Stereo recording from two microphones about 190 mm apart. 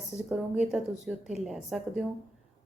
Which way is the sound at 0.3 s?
5° right (ahead or behind).